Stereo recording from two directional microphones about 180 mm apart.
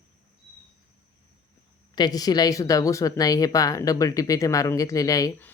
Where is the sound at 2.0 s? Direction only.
20° left (ahead or behind).